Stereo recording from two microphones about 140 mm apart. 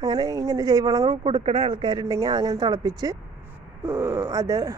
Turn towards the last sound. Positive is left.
turn(degrees=-25)  # may be behind; listen again after turning